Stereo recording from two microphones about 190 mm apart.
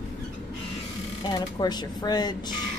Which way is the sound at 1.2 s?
20° left (ahead or behind).